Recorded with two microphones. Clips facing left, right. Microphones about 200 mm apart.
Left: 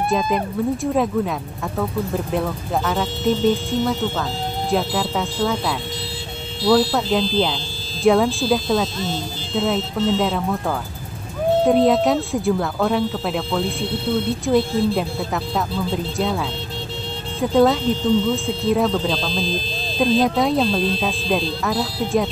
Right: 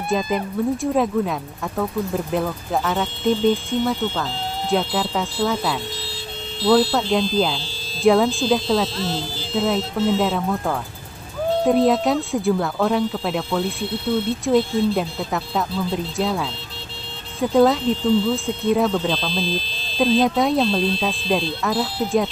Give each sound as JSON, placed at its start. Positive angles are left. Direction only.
{"t": 0.0, "sound": "speech", "side_deg": 0}
{"t": 11.6, "sound": "speech", "side_deg": 0}